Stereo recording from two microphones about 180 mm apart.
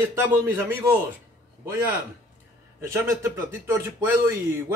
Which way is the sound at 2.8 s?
15° right (ahead or behind).